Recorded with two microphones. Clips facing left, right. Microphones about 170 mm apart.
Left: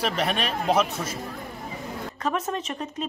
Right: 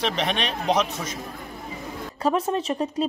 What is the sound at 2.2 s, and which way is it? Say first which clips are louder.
Speech: right 5 dB; 35° right (ahead or behind).